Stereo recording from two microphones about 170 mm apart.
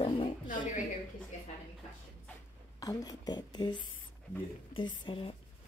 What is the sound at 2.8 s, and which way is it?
A woman's voice, 20° left (ahead or behind).